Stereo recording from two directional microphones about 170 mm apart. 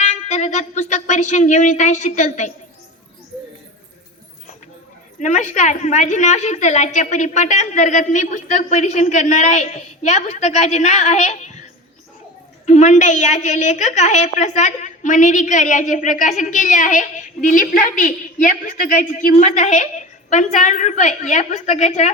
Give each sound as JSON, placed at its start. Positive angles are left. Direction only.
{"t": 0.0, "sound": "speech", "side_deg": 45}
{"t": 5.2, "sound": "a woman's voice", "side_deg": 45}
{"t": 12.6, "sound": "a woman's voice", "side_deg": 45}